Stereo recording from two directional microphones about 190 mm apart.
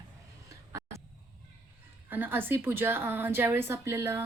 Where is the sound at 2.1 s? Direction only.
10° right (ahead or behind).